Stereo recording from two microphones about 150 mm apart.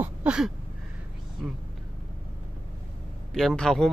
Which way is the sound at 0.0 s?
10° right (ahead or behind).